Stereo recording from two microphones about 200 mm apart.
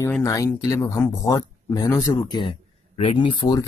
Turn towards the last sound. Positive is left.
turn(degrees=20)  # may be behind; listen again after turning